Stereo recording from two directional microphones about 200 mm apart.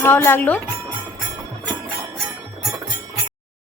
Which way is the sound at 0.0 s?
10° left (ahead or behind).